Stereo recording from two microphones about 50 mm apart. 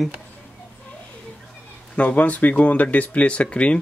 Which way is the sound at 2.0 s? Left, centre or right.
Left.